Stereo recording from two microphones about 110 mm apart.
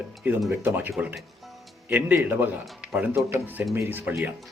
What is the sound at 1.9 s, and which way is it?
Speech, 15° right (ahead or behind).